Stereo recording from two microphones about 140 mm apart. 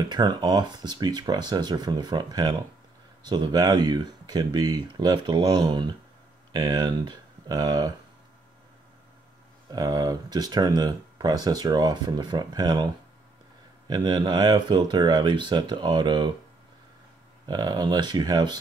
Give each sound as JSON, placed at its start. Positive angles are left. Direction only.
{"t": 0.1, "sound": "speech", "side_deg": -30}
{"t": 9.7, "sound": "speech", "side_deg": -25}
{"t": 13.8, "sound": "speech", "side_deg": -30}
{"t": 17.5, "sound": "speech", "side_deg": -30}